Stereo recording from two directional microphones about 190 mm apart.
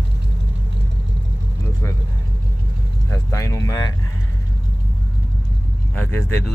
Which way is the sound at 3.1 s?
15° left (ahead or behind).